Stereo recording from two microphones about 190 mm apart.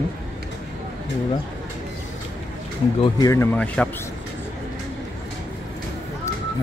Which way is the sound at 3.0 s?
20° left (ahead or behind).